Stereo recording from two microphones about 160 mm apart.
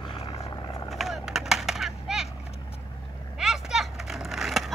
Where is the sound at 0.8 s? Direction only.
Centre (ahead or behind).